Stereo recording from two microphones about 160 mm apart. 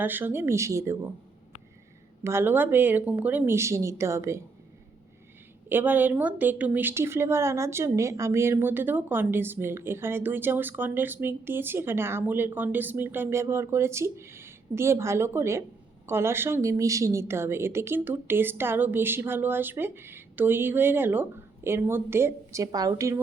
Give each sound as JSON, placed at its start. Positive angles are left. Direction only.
{"t": 0.0, "sound": "speech", "side_deg": -10}
{"t": 2.2, "sound": "speech", "side_deg": -15}
{"t": 5.6, "sound": "speech", "side_deg": -10}